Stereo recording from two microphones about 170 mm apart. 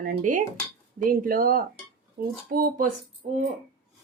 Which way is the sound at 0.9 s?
55° right (ahead or behind).